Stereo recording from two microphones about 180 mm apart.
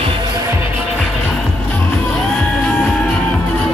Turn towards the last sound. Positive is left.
turn(degrees=5)  # may be behind; listen again after turning